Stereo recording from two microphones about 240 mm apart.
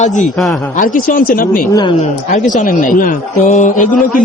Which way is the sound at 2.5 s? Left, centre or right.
Left.